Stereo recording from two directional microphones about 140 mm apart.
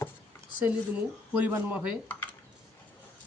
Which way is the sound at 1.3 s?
10° right (ahead or behind).